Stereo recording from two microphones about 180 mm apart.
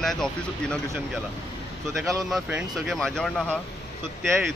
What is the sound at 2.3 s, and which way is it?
Speech, 5° right (ahead or behind).